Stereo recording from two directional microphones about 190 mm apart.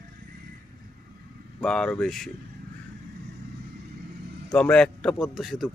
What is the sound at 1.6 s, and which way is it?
Speech, 5° left (ahead or behind).